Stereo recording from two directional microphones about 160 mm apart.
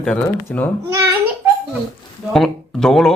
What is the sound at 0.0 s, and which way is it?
Speech, 10° left (ahead or behind).